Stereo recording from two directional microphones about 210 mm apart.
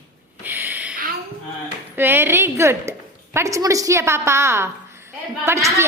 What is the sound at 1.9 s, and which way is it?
A woman's voice, 10° right (ahead or behind).